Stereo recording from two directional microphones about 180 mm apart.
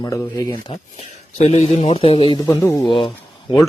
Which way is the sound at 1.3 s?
40° left (ahead or behind).